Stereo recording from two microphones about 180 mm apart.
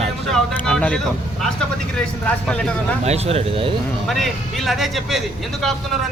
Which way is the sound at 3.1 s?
35° right (ahead or behind).